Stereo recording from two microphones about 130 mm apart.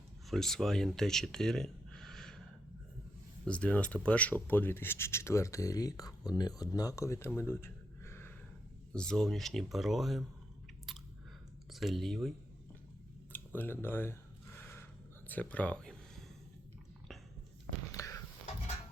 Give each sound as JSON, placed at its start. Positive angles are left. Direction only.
{"t": 0.3, "sound": "speech", "side_deg": 5}
{"t": 3.4, "sound": "speech", "side_deg": 10}
{"t": 8.9, "sound": "speech", "side_deg": 5}
{"t": 11.7, "sound": "speech", "side_deg": 0}
{"t": 13.3, "sound": "speech", "side_deg": 15}
{"t": 14.6, "sound": "a sound", "side_deg": 20}
{"t": 15.3, "sound": "speech", "side_deg": 10}
{"t": 17.9, "sound": "a sound", "side_deg": 25}